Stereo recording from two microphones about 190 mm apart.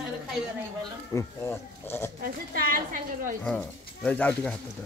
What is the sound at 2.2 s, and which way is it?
A woman's voice, 45° right (ahead or behind).